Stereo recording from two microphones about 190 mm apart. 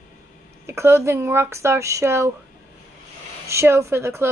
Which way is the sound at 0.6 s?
15° right (ahead or behind).